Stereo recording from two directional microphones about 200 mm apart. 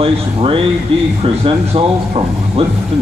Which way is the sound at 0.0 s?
25° right (ahead or behind).